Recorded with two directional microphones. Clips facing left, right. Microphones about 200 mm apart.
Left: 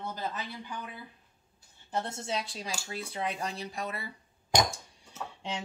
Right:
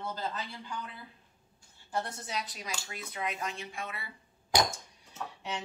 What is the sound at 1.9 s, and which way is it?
A woman's voice, 25° left (ahead or behind).